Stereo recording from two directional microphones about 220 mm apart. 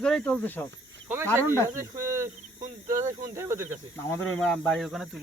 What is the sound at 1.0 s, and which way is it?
Cricket, 10° right (ahead or behind).